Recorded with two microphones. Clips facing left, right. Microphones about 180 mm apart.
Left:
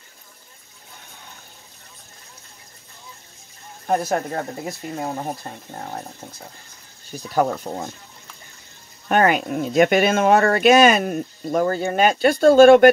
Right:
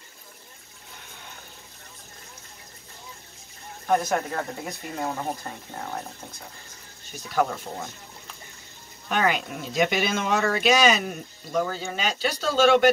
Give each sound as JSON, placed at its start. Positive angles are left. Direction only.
{"t": 3.8, "sound": "speech", "side_deg": 35}
{"t": 9.1, "sound": "speech", "side_deg": 50}